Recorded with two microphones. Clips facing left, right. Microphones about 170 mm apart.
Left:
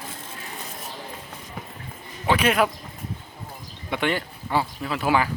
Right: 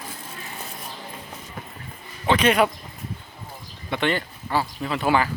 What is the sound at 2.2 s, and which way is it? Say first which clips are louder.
Speech: right 2 dB; 5° left (ahead or behind).